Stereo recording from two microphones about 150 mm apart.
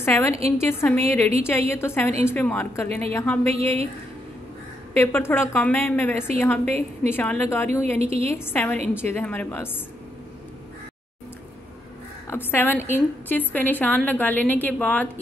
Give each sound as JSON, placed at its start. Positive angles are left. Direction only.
{"t": 0.0, "sound": "a woman's voice", "side_deg": 15}
{"t": 3.4, "sound": "a woman's voice", "side_deg": -45}
{"t": 4.9, "sound": "a woman's voice", "side_deg": 15}
{"t": 8.0, "sound": "a woman's voice", "side_deg": -45}
{"t": 8.3, "sound": "a woman's voice", "side_deg": 15}
{"t": 12.3, "sound": "a woman's voice", "side_deg": 15}